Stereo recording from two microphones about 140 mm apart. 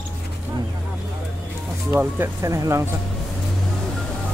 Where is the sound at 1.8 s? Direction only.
15° right (ahead or behind).